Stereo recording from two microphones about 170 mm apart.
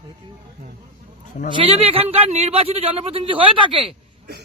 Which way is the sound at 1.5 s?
35° right (ahead or behind).